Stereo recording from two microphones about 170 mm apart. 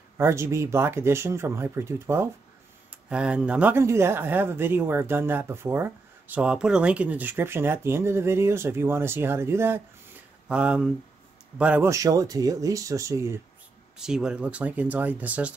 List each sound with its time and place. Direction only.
0.2 s speech: 15° right (ahead or behind)
11.9 s speech: 20° right (ahead or behind)
13.9 s speech: 5° right (ahead or behind)